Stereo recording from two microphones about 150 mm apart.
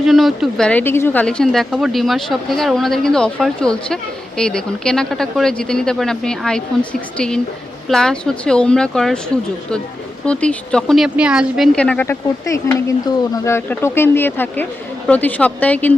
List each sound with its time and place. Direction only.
0.0 s speech: centre (ahead or behind)
10.2 s speech: 10° left (ahead or behind)
12.0 s speech: 15° left (ahead or behind)